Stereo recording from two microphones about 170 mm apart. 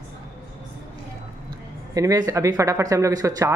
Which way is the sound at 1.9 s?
20° right (ahead or behind).